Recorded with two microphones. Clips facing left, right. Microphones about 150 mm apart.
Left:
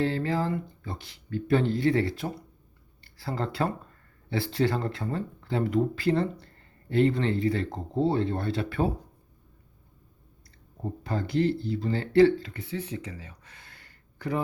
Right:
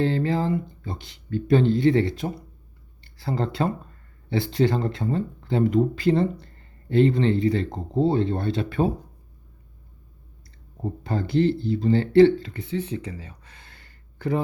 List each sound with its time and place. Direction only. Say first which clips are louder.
0.0 s speech: right 4 dB; 25° right (ahead or behind)
11.0 s speech: right 4 dB; 25° right (ahead or behind)